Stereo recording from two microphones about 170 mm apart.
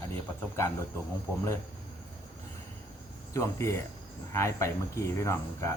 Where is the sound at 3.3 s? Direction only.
15° left (ahead or behind).